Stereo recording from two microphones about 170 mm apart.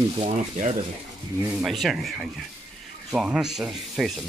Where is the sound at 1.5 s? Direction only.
Centre (ahead or behind).